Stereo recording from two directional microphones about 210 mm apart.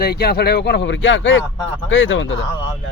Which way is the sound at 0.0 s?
50° left (ahead or behind).